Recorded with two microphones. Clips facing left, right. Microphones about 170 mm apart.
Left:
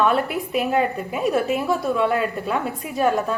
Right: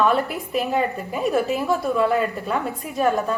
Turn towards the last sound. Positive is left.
turn(degrees=0)  # may be behind; listen again after turning